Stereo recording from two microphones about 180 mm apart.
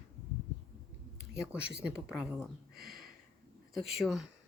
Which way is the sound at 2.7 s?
55° right (ahead or behind).